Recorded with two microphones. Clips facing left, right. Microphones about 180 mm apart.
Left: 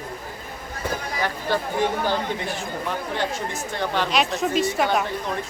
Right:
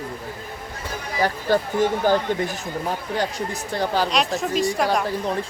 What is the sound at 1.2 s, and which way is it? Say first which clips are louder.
Speech: right 6 dB; 45° right (ahead or behind).